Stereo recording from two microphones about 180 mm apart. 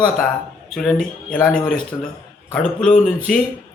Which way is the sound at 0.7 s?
5° left (ahead or behind).